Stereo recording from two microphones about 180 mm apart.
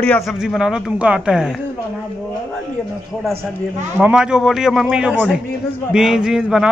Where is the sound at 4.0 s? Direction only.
5° right (ahead or behind).